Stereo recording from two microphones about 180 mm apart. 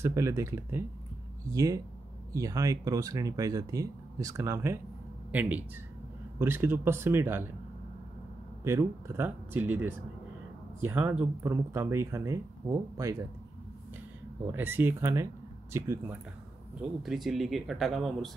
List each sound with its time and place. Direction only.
0.0 s speech: 15° right (ahead or behind)
8.6 s speech: 15° right (ahead or behind)
14.4 s speech: 10° right (ahead or behind)
17.0 s speech: centre (ahead or behind)